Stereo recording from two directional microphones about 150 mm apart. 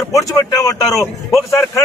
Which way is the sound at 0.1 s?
20° left (ahead or behind).